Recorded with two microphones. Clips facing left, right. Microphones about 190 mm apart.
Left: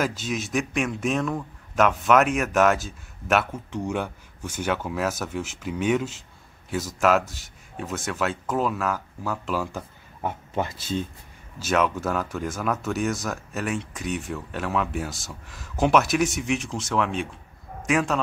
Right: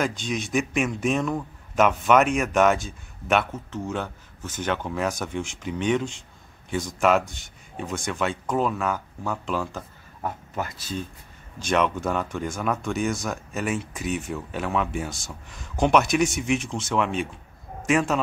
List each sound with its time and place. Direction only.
0.0 s speech: 5° left (ahead or behind)
3.7 s speech: 15° left (ahead or behind)
10.2 s speech: 25° left (ahead or behind)
11.6 s speech: 5° left (ahead or behind)